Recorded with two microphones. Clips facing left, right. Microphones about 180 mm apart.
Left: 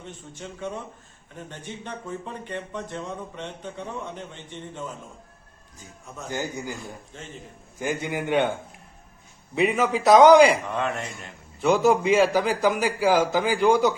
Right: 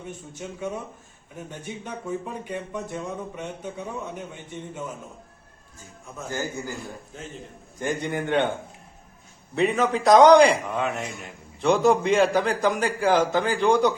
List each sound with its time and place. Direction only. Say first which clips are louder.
0.0 s speech: right 3 dB; 10° right (ahead or behind)
6.3 s a man's voice: even; 20° left (ahead or behind)
7.1 s speech: right 3 dB; 5° right (ahead or behind)
7.8 s a man's voice: right 1 dB; 5° left (ahead or behind)
9.6 s a man's voice: even; 10° left (ahead or behind)
10.7 s speech: right 1 dB; 5° right (ahead or behind)
11.6 s a man's voice: even; 5° left (ahead or behind)